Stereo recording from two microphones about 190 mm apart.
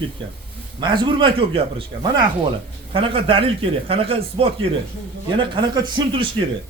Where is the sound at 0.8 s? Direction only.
25° right (ahead or behind).